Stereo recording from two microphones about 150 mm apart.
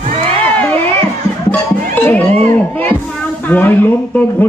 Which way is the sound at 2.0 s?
15° left (ahead or behind).